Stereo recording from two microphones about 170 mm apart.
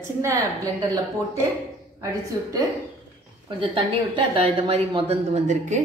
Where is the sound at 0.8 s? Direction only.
20° right (ahead or behind).